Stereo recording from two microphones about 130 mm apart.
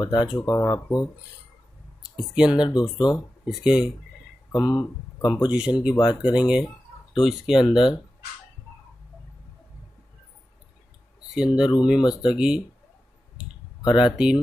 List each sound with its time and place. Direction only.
0.0 s speech: 35° left (ahead or behind)
2.1 s speech: 5° right (ahead or behind)
2.7 s speech: 35° left (ahead or behind)
3.4 s speech: 5° right (ahead or behind)
4.5 s speech: 30° left (ahead or behind)
5.5 s speech: 10° right (ahead or behind)
5.9 s speech: 35° left (ahead or behind)
6.3 s speech: 5° right (ahead or behind)
11.3 s speech: 5° right (ahead or behind)
12.0 s speech: 35° left (ahead or behind)
12.4 s speech: 5° right (ahead or behind)
13.9 s speech: 5° right (ahead or behind)